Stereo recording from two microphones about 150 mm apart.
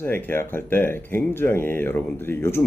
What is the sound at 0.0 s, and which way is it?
Speech, 15° left (ahead or behind).